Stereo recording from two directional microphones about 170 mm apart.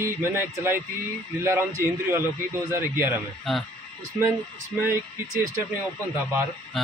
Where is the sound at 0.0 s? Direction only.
15° right (ahead or behind).